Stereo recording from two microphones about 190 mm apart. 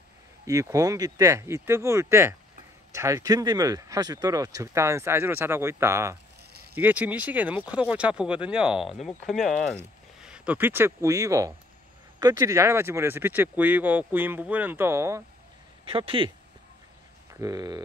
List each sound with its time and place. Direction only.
0.5 s speech: 15° right (ahead or behind)
15.9 s speech: 30° right (ahead or behind)
17.4 s speech: 20° right (ahead or behind)